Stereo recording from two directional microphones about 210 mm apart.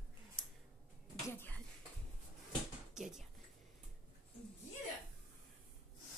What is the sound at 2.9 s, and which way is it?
Speech, centre (ahead or behind).